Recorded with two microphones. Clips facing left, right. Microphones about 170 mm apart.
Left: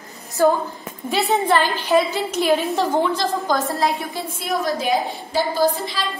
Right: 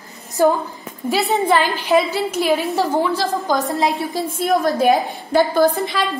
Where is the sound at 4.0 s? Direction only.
45° right (ahead or behind).